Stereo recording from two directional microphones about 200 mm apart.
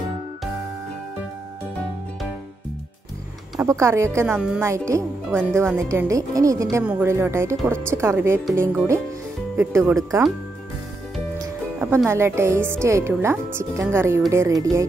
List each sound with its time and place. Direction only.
3.5 s speech: 15° right (ahead or behind)
9.6 s speech: 15° right (ahead or behind)
11.3 s music: 15° right (ahead or behind)
12.1 s speech: 10° right (ahead or behind)